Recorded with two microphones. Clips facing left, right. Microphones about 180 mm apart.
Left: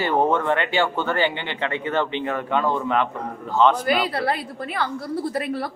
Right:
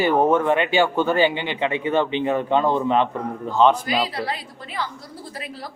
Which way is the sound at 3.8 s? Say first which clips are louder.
Left 3 dB; 60° left (ahead or behind).